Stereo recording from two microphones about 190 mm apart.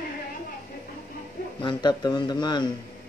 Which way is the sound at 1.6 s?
25° left (ahead or behind).